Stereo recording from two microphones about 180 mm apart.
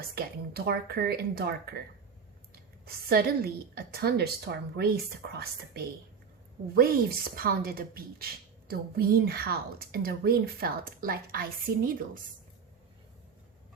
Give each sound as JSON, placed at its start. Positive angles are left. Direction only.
{"t": 0.1, "sound": "speech", "side_deg": -60}
{"t": 2.8, "sound": "speech", "side_deg": -60}